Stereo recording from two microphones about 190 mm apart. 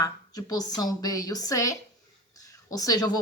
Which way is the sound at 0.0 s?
20° left (ahead or behind).